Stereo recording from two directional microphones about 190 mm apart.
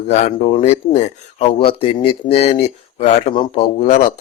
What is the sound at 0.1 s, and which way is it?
Speech, 35° left (ahead or behind).